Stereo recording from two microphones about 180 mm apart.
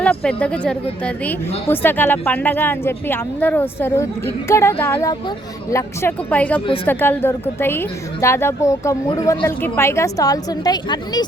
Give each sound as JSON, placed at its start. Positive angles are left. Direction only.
{"t": 0.0, "sound": "a woman's voice", "side_deg": 5}